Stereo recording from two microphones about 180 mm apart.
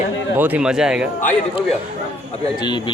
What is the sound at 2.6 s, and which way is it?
Speech, 25° left (ahead or behind).